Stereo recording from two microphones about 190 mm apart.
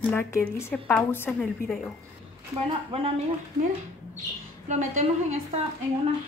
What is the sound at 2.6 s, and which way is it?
Speech, 30° right (ahead or behind).